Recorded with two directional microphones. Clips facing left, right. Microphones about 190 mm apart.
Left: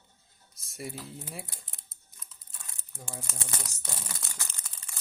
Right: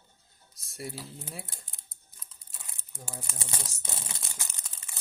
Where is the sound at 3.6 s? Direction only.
20° right (ahead or behind).